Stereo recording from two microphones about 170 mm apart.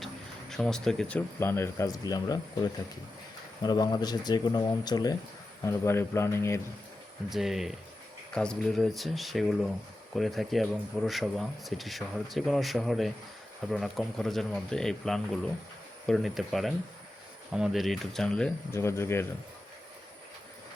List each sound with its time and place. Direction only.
0.5 s speech: 5° left (ahead or behind)
7.3 s speech: centre (ahead or behind); by 19.2 s 15° left (ahead or behind)